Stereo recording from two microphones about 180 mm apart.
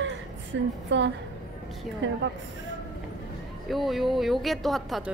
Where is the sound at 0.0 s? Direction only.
85° right.